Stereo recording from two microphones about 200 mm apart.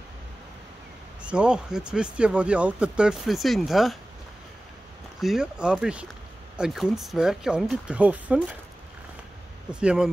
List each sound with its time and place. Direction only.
1.2 s speech: 5° right (ahead or behind)
5.2 s speech: centre (ahead or behind)
9.7 s speech: 5° right (ahead or behind)